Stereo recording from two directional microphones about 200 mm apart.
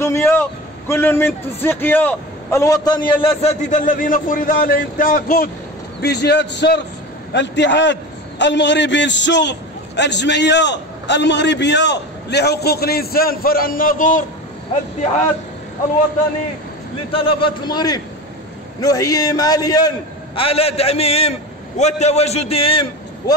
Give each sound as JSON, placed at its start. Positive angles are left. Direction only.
{"t": 0.0, "sound": "a man's voice", "side_deg": 15}
{"t": 5.9, "sound": "a man's voice", "side_deg": 55}
{"t": 17.1, "sound": "a man's voice", "side_deg": 25}
{"t": 20.3, "sound": "a man's voice", "side_deg": 30}